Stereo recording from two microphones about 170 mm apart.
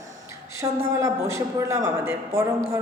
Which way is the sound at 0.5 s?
15° right (ahead or behind).